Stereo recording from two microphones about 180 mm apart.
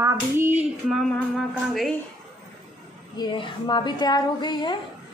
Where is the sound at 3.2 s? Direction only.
25° left (ahead or behind).